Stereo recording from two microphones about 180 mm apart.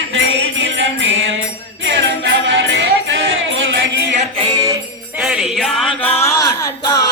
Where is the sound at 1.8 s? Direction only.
90° right.